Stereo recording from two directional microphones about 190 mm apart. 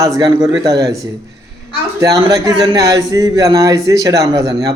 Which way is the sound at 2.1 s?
20° right (ahead or behind).